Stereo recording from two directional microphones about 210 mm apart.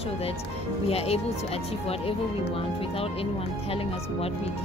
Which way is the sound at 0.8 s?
30° left (ahead or behind).